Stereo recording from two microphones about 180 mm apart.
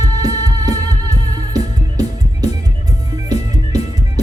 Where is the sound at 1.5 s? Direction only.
35° left (ahead or behind).